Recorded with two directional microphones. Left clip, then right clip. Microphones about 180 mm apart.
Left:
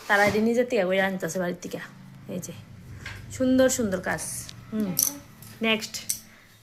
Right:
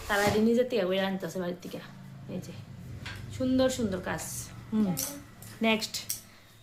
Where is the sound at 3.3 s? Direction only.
40° left (ahead or behind).